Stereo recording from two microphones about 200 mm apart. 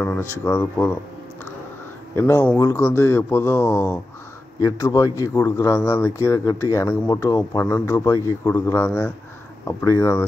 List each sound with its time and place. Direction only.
0.0 s speech: 10° left (ahead or behind)
2.1 s speech: 15° left (ahead or behind)